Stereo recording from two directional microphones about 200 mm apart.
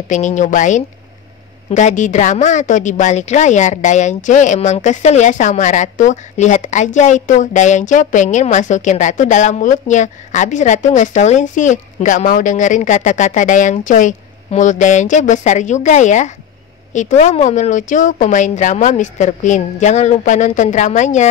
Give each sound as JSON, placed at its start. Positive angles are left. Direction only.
{"t": 0.1, "sound": "a woman's voice", "side_deg": 35}